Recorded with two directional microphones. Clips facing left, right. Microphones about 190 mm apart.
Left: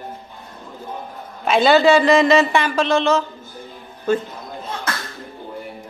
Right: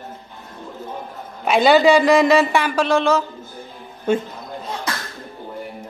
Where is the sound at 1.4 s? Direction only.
10° right (ahead or behind).